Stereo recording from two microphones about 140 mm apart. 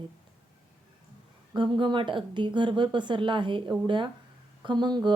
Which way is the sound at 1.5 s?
35° right (ahead or behind).